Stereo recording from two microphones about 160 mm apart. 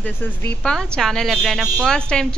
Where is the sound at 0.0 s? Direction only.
15° left (ahead or behind).